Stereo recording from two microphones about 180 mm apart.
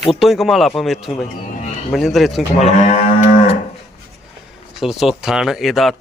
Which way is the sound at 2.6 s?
40° left (ahead or behind).